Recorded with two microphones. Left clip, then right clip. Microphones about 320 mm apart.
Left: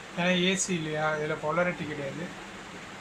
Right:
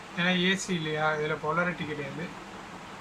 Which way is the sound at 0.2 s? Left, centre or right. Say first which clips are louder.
Even; centre.